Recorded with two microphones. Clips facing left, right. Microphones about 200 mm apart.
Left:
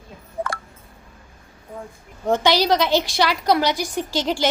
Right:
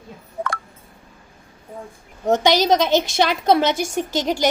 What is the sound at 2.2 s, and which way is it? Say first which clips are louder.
A woman's voice: right 2 dB; 20° right (ahead or behind).